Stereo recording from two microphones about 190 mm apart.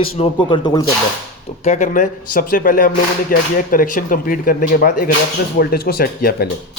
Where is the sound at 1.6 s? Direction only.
40° left (ahead or behind).